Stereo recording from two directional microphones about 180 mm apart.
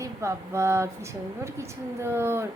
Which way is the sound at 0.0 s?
15° right (ahead or behind).